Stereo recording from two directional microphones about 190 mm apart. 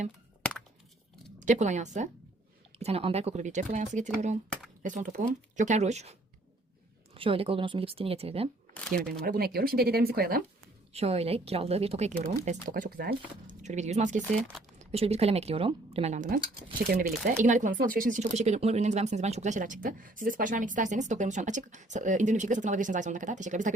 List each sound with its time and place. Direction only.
1.4 s speech: 40° right (ahead or behind)
9.0 s speech: centre (ahead or behind)
9.2 s speech: 55° right (ahead or behind)
10.9 s speech: 30° right (ahead or behind)